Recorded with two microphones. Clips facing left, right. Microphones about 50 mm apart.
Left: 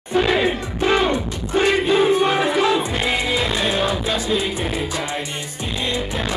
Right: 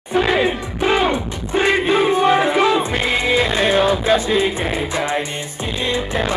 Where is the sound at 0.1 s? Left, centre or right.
Centre.